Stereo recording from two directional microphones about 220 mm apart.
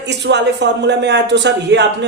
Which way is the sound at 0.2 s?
50° right (ahead or behind).